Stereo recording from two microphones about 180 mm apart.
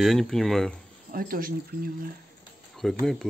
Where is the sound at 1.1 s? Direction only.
55° right (ahead or behind).